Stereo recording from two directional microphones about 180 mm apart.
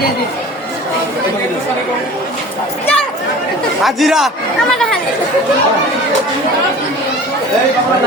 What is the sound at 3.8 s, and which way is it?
A man's voice, centre (ahead or behind).